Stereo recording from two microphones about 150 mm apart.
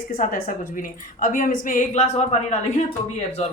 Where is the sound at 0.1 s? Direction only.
65° left (ahead or behind).